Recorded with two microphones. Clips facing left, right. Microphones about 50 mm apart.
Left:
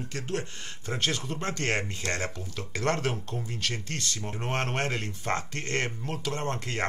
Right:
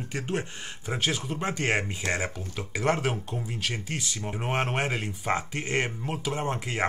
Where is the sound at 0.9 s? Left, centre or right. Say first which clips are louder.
Right 1 dB; centre.